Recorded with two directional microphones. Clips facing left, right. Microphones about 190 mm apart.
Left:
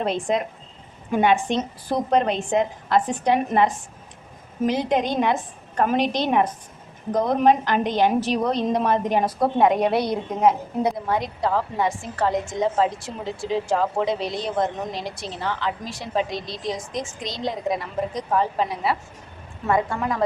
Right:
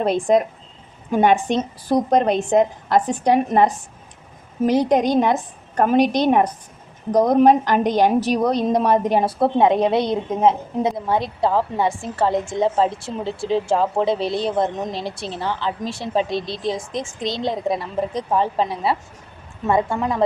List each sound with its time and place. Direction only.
0.0 s a woman's voice: 40° right (ahead or behind); by 20.2 s 25° right (ahead or behind)